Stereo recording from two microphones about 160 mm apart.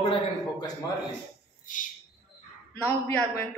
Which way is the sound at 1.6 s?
55° left (ahead or behind).